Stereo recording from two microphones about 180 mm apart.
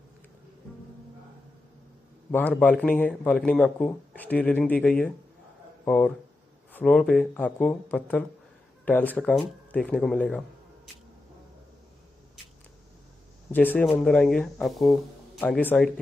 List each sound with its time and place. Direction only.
2.3 s speech: 10° left (ahead or behind)
13.5 s speech: 10° left (ahead or behind)